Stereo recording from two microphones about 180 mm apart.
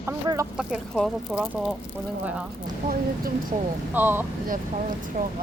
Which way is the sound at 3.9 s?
10° right (ahead or behind).